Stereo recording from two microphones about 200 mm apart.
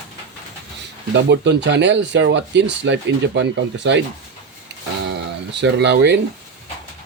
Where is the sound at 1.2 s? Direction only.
60° right (ahead or behind).